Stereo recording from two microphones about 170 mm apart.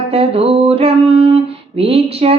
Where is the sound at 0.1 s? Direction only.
35° right (ahead or behind).